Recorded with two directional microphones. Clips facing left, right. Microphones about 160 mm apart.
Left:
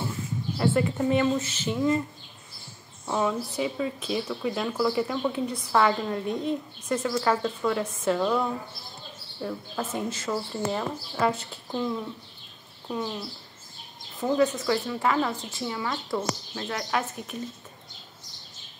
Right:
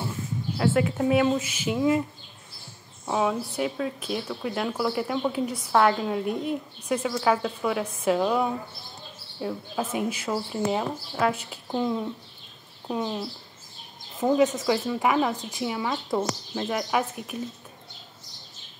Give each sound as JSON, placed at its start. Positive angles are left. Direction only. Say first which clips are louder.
{"t": 0.6, "sound": "speech", "louder": "right 1 dB", "side_deg": -5}
{"t": 3.1, "sound": "speech", "louder": "right 1 dB", "side_deg": -5}
{"t": 11.7, "sound": "speech", "louder": "right 3 dB", "side_deg": -20}
{"t": 14.3, "sound": "speech", "louder": "right 1 dB", "side_deg": -20}